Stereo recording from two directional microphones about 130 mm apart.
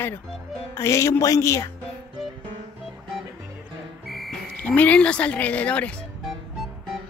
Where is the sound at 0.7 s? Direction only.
20° left (ahead or behind).